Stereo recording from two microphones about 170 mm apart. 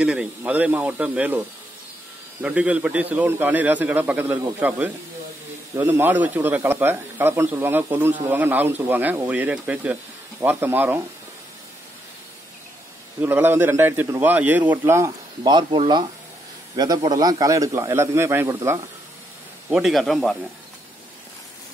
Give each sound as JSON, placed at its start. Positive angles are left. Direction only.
{"t": 0.0, "sound": "speech", "side_deg": -5}
{"t": 2.4, "sound": "speech", "side_deg": -5}
{"t": 13.2, "sound": "a man's voice", "side_deg": -10}
{"t": 19.7, "sound": "a man's voice", "side_deg": 0}